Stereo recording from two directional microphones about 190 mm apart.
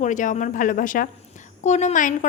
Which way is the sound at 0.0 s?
40° left (ahead or behind).